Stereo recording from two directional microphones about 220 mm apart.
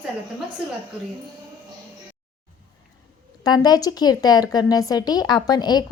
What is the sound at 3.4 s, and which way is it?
A woman's voice, 20° left (ahead or behind).